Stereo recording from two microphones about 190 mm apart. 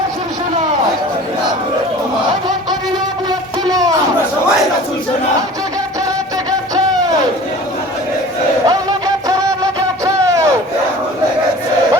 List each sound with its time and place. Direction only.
3.7 s music: 20° right (ahead or behind)
8.6 s music: 20° right (ahead or behind)
10.2 s battle cry: 15° right (ahead or behind)